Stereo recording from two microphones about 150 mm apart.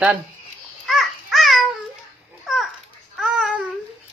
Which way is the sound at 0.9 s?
Centre (ahead or behind).